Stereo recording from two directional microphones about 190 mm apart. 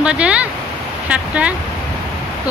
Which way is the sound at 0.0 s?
5° right (ahead or behind).